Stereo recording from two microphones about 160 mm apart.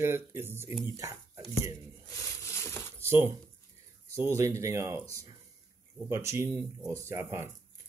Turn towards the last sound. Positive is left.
turn(degrees=-15)  # may be behind; listen again after turning